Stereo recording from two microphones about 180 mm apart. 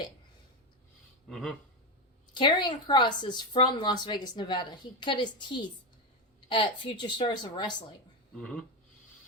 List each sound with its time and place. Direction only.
1.3 s speech: centre (ahead or behind)
2.3 s a woman's voice: 25° left (ahead or behind)
8.4 s speech: 5° left (ahead or behind)